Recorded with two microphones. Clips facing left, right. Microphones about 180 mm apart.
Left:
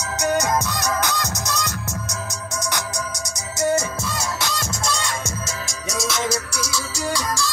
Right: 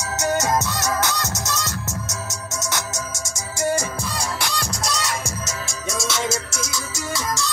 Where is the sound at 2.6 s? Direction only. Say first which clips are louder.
Left 1 dB; 20° right (ahead or behind).